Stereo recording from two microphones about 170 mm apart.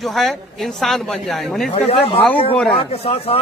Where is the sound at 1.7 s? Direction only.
30° left (ahead or behind).